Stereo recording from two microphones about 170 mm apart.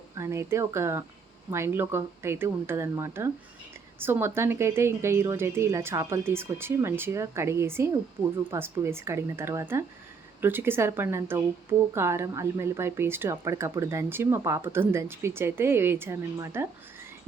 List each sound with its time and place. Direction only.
0.2 s speech: 15° right (ahead or behind)